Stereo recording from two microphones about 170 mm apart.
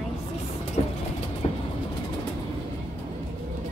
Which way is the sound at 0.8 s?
40° left (ahead or behind).